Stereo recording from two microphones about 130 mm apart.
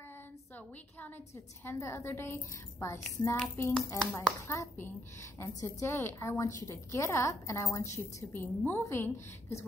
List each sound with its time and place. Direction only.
1.0 s a woman's voice: 15° left (ahead or behind)